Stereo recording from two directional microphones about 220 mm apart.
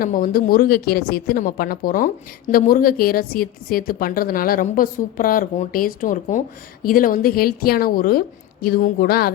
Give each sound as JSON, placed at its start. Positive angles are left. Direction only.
{"t": 0.0, "sound": "a woman's voice", "side_deg": 40}